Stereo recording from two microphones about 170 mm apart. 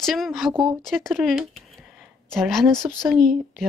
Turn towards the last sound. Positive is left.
turn(degrees=0)  # may be behind; listen again after turning